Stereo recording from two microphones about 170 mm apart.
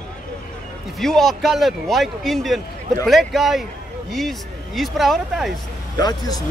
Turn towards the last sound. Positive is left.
turn(degrees=25)  # may be behind; listen again after turning